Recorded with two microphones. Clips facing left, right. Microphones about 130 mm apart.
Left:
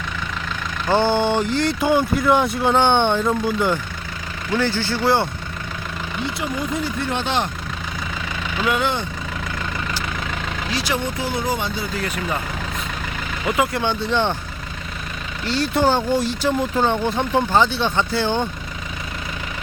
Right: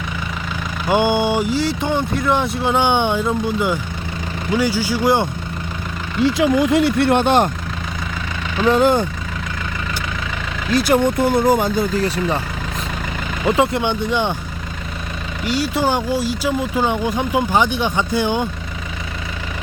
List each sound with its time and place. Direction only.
0.9 s speech: 15° right (ahead or behind)
6.2 s speech: 90° right; by 7.5 s 50° right (ahead or behind)
8.6 s speech: 40° right (ahead or behind)
10.7 s speech: 50° right (ahead or behind); by 12.4 s 30° right (ahead or behind)
13.4 s speech: 25° right (ahead or behind)
15.4 s speech: 10° right (ahead or behind)